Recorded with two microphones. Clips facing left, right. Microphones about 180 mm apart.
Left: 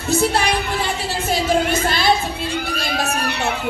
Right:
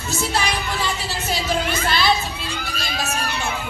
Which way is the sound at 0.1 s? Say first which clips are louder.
Left 6 dB; 60° left (ahead or behind).